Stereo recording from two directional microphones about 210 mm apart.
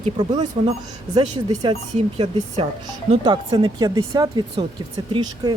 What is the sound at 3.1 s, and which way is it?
Speech, 25° right (ahead or behind).